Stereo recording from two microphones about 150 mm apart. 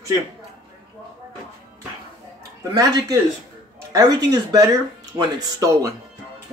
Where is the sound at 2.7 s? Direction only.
25° right (ahead or behind).